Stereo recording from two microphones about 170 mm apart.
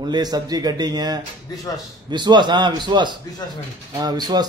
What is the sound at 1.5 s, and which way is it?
Speech, 20° left (ahead or behind).